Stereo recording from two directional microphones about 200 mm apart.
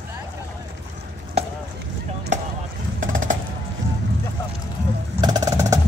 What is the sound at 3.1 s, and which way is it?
Music, 40° right (ahead or behind).